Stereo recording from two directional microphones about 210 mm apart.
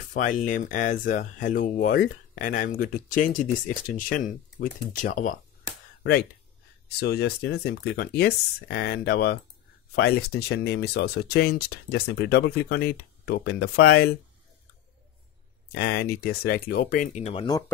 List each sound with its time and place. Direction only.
0.1 s speech: 40° left (ahead or behind)
7.0 s speech: 50° left (ahead or behind)
15.7 s speech: 50° left (ahead or behind); by 17.6 s 20° left (ahead or behind)